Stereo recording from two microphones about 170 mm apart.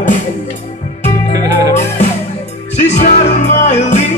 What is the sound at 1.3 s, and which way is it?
Music, 20° right (ahead or behind).